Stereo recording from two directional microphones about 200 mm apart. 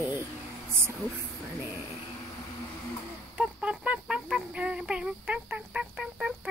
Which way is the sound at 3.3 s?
5° right (ahead or behind).